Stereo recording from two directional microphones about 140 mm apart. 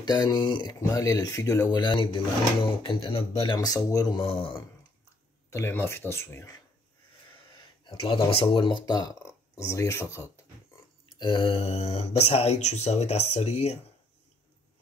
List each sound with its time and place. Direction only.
0.0 s speech: 30° left (ahead or behind)
3.5 s speech: 25° left (ahead or behind)
5.5 s speech: 15° left (ahead or behind)
7.8 s speech: 35° left (ahead or behind); by 10.4 s 20° left (ahead or behind)
11.1 s speech: 35° left (ahead or behind)